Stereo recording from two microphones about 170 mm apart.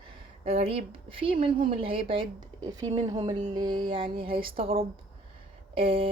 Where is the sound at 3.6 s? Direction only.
25° right (ahead or behind).